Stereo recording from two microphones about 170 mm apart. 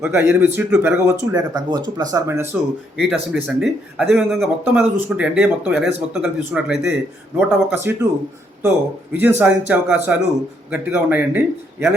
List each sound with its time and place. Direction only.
0.0 s speech: 15° right (ahead or behind)
3.0 s speech: 5° right (ahead or behind)
9.1 s speech: 10° right (ahead or behind)